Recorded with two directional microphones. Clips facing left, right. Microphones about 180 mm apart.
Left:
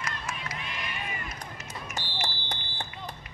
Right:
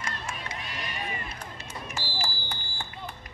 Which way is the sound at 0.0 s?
35° right (ahead or behind).